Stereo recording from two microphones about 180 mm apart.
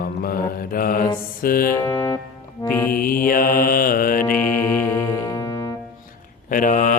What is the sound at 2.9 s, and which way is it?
Mantra, 50° left (ahead or behind).